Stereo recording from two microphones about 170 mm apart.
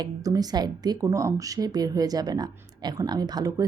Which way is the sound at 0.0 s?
20° right (ahead or behind).